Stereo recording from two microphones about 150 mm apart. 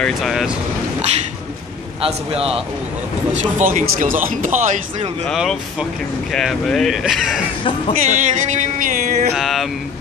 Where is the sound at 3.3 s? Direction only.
55° right (ahead or behind).